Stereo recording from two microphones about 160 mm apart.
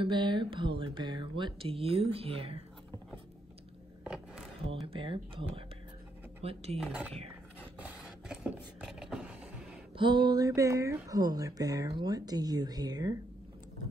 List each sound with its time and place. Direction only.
0.0 s speech: 30° right (ahead or behind)
4.0 s a sound: 5° right (ahead or behind)
4.8 s speech: 35° right (ahead or behind)
6.8 s speech: 5° right (ahead or behind)
7.8 s a sound: 5° right (ahead or behind)
9.9 s speech: 30° right (ahead or behind)